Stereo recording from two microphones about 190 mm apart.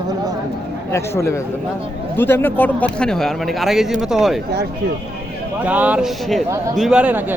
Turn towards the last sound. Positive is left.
turn(degrees=-10)  # may be behind; listen again after turning